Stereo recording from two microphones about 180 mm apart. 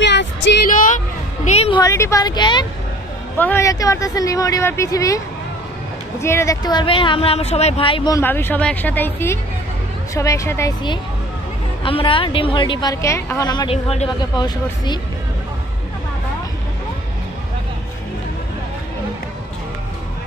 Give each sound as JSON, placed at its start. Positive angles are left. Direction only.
{"t": 0.0, "sound": "music", "side_deg": 75}
{"t": 0.7, "sound": "a sound", "side_deg": 45}
{"t": 1.8, "sound": "a woman's voice", "side_deg": 15}
{"t": 3.3, "sound": "speech", "side_deg": 10}
{"t": 6.2, "sound": "a woman's voice", "side_deg": 15}
{"t": 8.2, "sound": "a woman's voice", "side_deg": 10}